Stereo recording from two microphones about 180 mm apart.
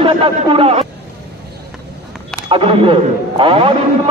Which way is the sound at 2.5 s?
30° right (ahead or behind).